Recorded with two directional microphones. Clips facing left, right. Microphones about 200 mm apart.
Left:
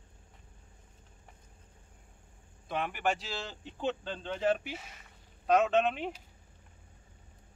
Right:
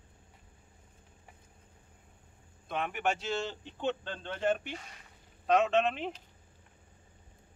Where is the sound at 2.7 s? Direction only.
Centre (ahead or behind).